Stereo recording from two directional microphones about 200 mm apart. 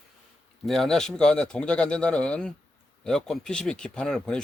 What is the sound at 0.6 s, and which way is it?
Speech, centre (ahead or behind).